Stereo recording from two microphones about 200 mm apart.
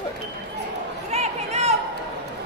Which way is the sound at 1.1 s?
35° right (ahead or behind).